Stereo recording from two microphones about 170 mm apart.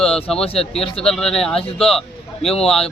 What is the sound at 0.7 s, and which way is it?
Speech, 35° left (ahead or behind).